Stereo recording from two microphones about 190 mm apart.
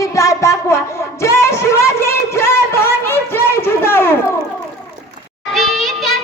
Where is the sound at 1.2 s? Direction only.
15° left (ahead or behind).